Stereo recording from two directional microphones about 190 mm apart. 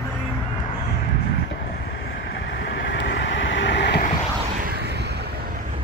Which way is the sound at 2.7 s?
65° left (ahead or behind).